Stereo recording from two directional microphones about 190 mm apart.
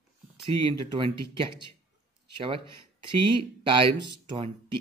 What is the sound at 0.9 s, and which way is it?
Speech, 25° right (ahead or behind).